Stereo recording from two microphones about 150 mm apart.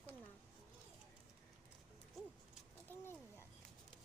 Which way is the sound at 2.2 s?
Centre (ahead or behind).